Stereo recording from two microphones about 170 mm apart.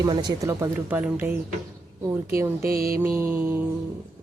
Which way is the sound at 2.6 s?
60° right (ahead or behind).